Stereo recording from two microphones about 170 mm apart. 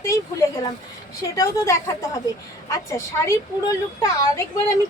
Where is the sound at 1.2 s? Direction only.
20° left (ahead or behind).